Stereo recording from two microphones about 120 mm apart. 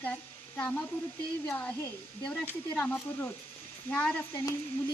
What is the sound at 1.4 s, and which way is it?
Speech, 15° left (ahead or behind).